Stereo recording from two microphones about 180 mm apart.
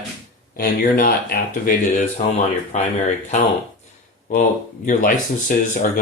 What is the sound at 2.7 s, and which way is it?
Speech, 40° left (ahead or behind).